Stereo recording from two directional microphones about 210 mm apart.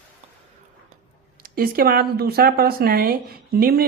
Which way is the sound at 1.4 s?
45° right (ahead or behind).